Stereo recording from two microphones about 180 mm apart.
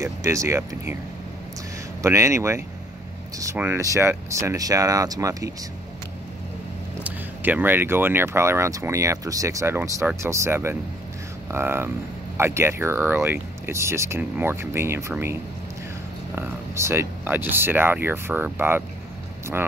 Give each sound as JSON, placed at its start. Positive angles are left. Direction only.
{"t": 0.0, "sound": "speech", "side_deg": -15}
{"t": 2.0, "sound": "speech", "side_deg": -15}
{"t": 7.0, "sound": "speech", "side_deg": -10}
{"t": 16.3, "sound": "speech", "side_deg": -15}